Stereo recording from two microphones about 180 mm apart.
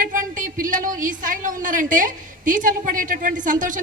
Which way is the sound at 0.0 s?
50° right (ahead or behind).